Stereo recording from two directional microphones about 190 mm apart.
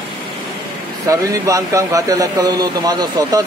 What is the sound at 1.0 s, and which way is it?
Speech, 15° right (ahead or behind).